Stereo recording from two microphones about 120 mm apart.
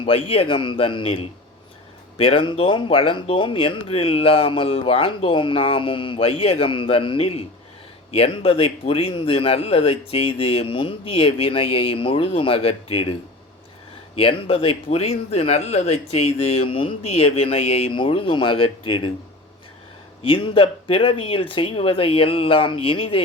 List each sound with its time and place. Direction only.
0.0 s speech: 50° left (ahead or behind)
14.2 s speech: 50° left (ahead or behind)
17.9 s speech: 45° left (ahead or behind)
20.2 s speech: 45° left (ahead or behind)